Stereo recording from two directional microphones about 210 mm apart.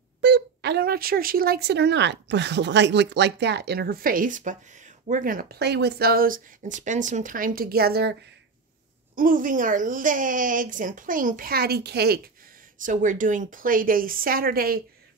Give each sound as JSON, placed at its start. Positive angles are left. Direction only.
{"t": 0.2, "sound": "speech", "side_deg": -55}
{"t": 9.1, "sound": "a woman's voice", "side_deg": -40}
{"t": 12.8, "sound": "a woman's voice", "side_deg": -40}